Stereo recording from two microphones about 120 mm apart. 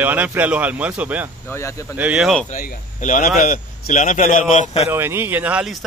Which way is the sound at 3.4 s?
80° left.